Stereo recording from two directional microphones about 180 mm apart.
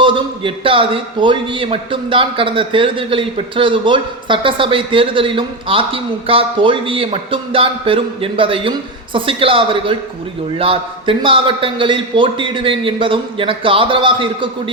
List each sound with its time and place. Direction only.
0.0 s a man's voice: 30° right (ahead or behind)